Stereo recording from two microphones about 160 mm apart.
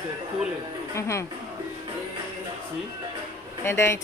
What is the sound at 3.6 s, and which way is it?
Speech, 15° left (ahead or behind).